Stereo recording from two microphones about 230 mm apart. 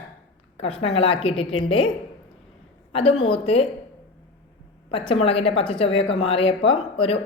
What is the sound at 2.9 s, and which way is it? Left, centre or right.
Speech, left.